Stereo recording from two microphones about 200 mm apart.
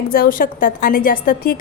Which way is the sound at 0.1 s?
45° left (ahead or behind).